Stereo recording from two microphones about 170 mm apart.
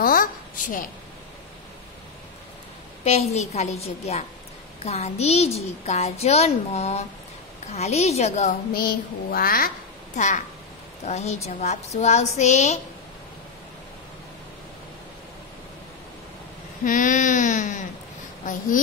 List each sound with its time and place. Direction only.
0.0 s a sound: 55° left (ahead or behind)
3.0 s a child's voice: 40° left (ahead or behind)
8.7 s child singing: 60° left (ahead or behind)
10.1 s a child's voice: 45° left (ahead or behind)
16.8 s a sound: 50° left (ahead or behind)
18.4 s speech: 50° left (ahead or behind)